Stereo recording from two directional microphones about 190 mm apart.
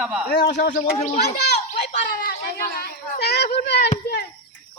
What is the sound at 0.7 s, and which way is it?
Speech, 40° left (ahead or behind).